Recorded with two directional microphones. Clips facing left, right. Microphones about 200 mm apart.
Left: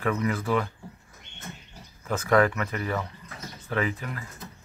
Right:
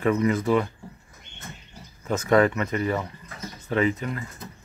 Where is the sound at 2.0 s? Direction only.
25° right (ahead or behind).